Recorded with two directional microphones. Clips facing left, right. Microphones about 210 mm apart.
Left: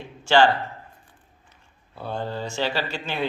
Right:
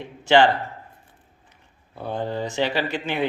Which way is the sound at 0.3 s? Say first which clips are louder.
Right 1 dB; 20° right (ahead or behind).